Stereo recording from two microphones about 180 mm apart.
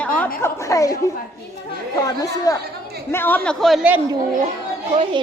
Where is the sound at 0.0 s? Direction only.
5° left (ahead or behind).